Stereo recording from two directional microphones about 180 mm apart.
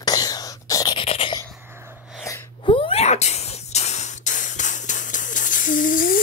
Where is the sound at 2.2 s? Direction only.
15° left (ahead or behind).